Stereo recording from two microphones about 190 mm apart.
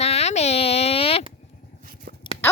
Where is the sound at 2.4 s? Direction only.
10° left (ahead or behind).